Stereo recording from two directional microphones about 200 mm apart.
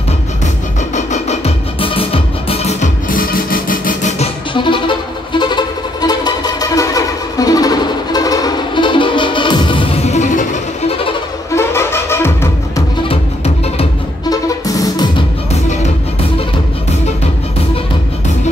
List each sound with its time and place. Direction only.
0.9 s music: 35° left (ahead or behind)
4.6 s music: 25° left (ahead or behind)
11.5 s music: 15° left (ahead or behind)
14.3 s music: 20° left (ahead or behind)